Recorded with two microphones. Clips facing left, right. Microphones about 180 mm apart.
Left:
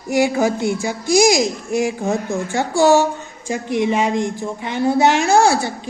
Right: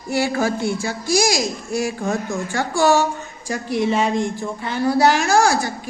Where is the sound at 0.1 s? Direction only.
15° left (ahead or behind).